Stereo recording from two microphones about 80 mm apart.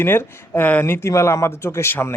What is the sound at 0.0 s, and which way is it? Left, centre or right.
Speech, left.